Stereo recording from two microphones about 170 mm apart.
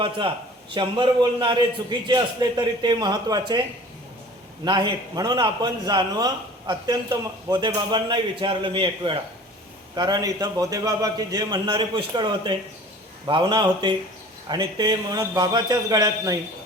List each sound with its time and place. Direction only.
0.7 s a man's voice: 30° right (ahead or behind)
4.6 s a man's voice: 25° right (ahead or behind)